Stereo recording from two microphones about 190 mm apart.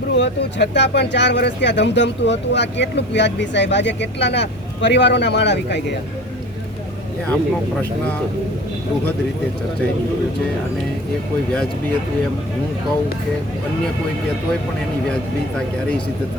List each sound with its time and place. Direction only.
0.2 s speech: 65° left (ahead or behind)